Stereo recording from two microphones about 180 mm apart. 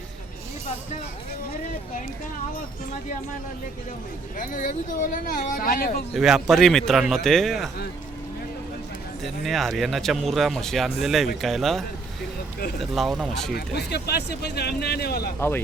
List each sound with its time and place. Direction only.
4.4 s speech: 45° left (ahead or behind)
6.1 s speech: centre (ahead or behind)
9.2 s speech: centre (ahead or behind)
12.8 s speech: centre (ahead or behind)
13.5 s speech: 65° left (ahead or behind)
15.4 s speech: 15° left (ahead or behind)